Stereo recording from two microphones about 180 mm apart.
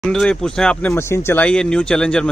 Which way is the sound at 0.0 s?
5° left (ahead or behind).